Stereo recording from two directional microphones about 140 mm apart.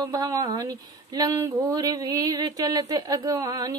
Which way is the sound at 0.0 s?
30° right (ahead or behind).